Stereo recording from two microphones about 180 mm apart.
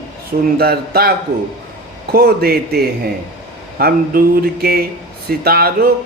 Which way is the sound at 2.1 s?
60° right (ahead or behind).